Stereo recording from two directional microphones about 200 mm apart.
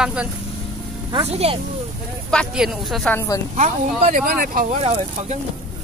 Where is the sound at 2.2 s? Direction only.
Centre (ahead or behind).